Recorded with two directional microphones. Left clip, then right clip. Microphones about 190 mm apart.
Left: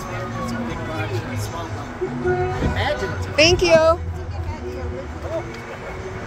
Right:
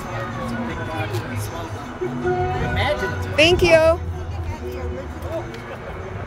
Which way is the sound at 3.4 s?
5° right (ahead or behind).